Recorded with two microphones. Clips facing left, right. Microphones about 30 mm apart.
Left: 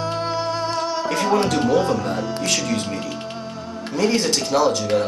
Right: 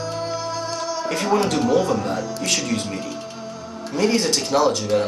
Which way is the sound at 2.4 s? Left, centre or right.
Centre.